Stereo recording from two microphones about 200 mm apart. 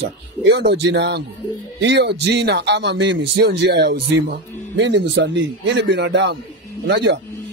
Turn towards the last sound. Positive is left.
turn(degrees=-60)  # may be behind; listen again after turning